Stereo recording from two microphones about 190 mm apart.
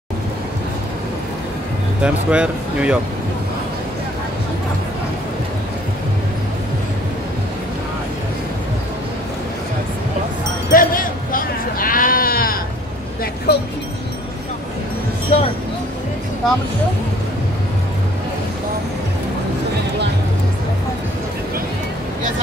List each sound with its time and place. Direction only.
2.0 s speech: 5° right (ahead or behind)
10.7 s sheep: 45° left (ahead or behind)
13.5 s a sound: 60° left (ahead or behind)
15.3 s vehicle: 40° left (ahead or behind)